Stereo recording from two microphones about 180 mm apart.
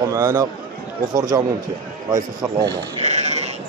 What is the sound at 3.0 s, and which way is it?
Sheep, 40° right (ahead or behind).